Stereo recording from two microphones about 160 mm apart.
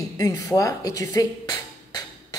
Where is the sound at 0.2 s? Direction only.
20° left (ahead or behind).